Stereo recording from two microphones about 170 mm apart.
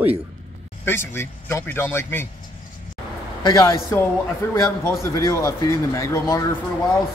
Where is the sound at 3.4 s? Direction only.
20° left (ahead or behind).